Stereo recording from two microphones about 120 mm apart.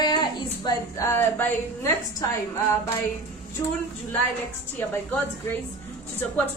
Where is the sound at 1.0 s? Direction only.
20° left (ahead or behind).